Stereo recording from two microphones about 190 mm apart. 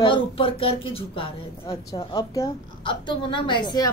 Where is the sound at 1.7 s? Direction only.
15° left (ahead or behind).